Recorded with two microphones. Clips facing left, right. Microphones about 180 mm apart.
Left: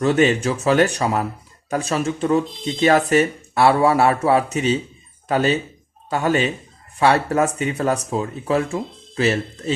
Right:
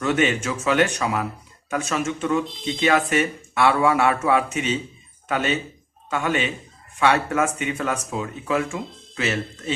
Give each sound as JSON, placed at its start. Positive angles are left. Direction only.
{"t": 0.0, "sound": "speech", "side_deg": 35}